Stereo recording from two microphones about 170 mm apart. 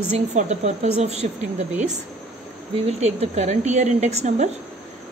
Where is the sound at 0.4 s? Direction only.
40° right (ahead or behind).